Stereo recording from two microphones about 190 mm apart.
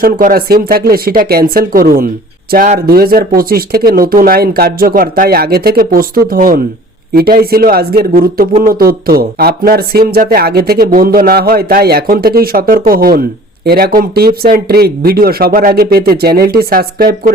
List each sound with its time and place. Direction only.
0.0 s speech: 50° right (ahead or behind)